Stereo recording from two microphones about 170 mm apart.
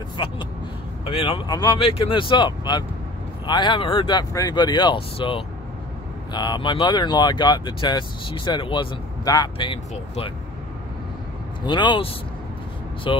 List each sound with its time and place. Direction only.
0.2 s a man's voice: 25° left (ahead or behind)
11.6 s speech: 25° left (ahead or behind)